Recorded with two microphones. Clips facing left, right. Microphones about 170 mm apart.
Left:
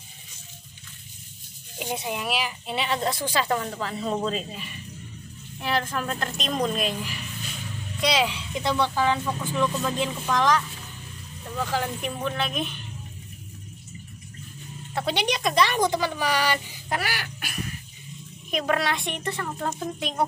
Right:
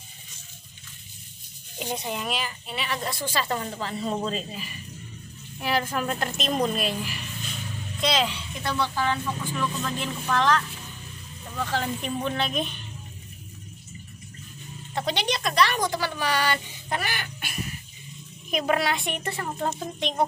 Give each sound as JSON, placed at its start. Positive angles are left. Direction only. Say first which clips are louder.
{"t": 1.8, "sound": "speech", "louder": "left 1 dB", "side_deg": 5}
{"t": 2.6, "sound": "a woman's voice", "louder": "left 5 dB", "side_deg": 25}
{"t": 3.8, "sound": "speech", "louder": "left 1 dB", "side_deg": 0}
{"t": 8.0, "sound": "speech", "louder": "left 1 dB", "side_deg": 10}
{"t": 15.0, "sound": "speech", "louder": "left 1 dB", "side_deg": 10}
{"t": 19.7, "sound": "speech", "louder": "even", "side_deg": 5}